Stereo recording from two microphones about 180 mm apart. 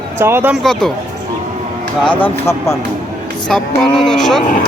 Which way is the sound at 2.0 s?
10° left (ahead or behind).